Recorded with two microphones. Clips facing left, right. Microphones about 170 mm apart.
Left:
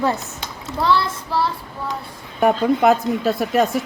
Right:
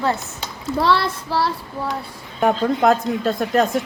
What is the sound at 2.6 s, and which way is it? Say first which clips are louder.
Speech: left 1 dB; 5° left (ahead or behind).